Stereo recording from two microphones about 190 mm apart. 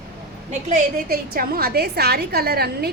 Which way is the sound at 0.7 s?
50° right (ahead or behind).